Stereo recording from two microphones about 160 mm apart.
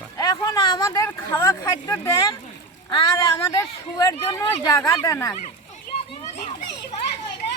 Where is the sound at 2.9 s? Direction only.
25° left (ahead or behind).